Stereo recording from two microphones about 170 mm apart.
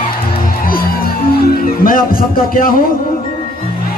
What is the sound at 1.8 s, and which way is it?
Speech, 55° left (ahead or behind).